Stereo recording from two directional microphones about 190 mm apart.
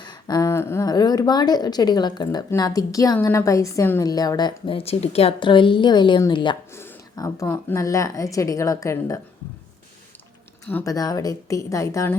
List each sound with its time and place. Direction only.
0.0 s a woman's voice: 20° left (ahead or behind)
10.7 s a woman's voice: 15° left (ahead or behind)